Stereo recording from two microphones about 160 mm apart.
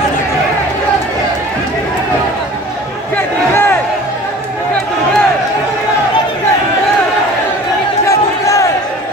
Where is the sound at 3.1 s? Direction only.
15° left (ahead or behind).